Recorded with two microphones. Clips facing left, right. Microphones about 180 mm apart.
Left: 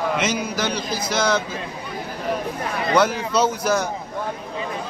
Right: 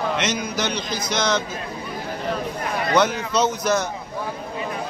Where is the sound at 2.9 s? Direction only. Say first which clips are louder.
Left 1 dB; 10° left (ahead or behind).